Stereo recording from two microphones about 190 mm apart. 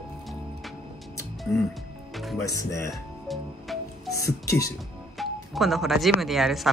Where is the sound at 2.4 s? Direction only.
15° left (ahead or behind).